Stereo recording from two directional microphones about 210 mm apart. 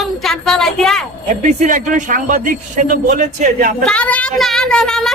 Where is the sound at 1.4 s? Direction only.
35° right (ahead or behind).